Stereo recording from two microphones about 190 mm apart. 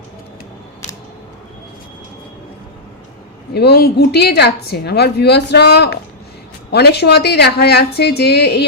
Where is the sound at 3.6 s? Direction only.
55° left (ahead or behind).